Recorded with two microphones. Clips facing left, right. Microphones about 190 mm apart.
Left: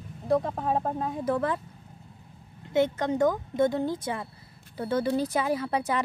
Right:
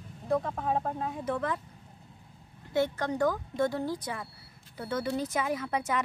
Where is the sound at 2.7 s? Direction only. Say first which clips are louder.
Left 4 dB; 20° left (ahead or behind).